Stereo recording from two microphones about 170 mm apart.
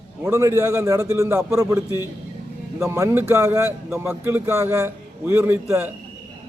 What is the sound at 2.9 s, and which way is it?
A man's voice, 15° right (ahead or behind).